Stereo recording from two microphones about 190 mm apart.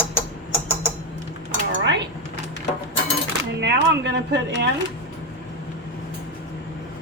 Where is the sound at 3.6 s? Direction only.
65° right (ahead or behind).